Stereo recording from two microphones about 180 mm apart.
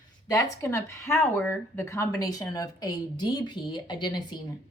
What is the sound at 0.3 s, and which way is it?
A woman's voice, 15° left (ahead or behind).